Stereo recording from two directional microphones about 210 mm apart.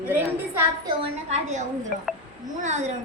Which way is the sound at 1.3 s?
35° right (ahead or behind).